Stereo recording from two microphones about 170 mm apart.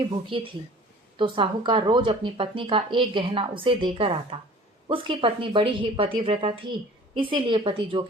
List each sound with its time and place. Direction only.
0.1 s a woman's voice: 30° right (ahead or behind)